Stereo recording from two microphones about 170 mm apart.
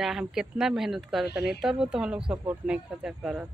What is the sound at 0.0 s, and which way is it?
Speech, 5° right (ahead or behind).